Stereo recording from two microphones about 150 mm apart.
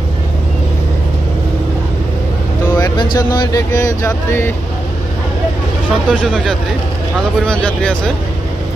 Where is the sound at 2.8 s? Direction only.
30° left (ahead or behind).